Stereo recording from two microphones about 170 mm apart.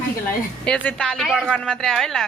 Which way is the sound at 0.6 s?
5° left (ahead or behind).